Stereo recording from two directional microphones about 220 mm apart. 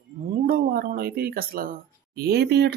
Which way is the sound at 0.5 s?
45° right (ahead or behind).